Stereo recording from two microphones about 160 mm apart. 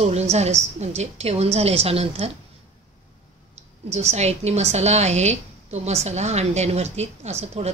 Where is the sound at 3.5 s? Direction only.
40° right (ahead or behind).